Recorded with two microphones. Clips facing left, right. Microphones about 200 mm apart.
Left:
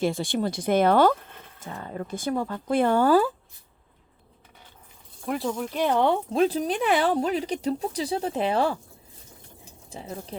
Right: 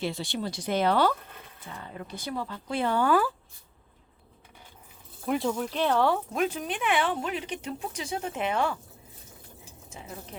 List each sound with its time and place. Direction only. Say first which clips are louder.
0.0 s speech: left 6 dB; 50° left (ahead or behind)
3.1 s speech: left 4 dB; 30° left (ahead or behind)
5.2 s speech: even; centre (ahead or behind); by 6.1 s 15° left (ahead or behind)
6.3 s speech: left 6 dB; 35° left (ahead or behind)
9.9 s speech: left 6 dB; 35° left (ahead or behind)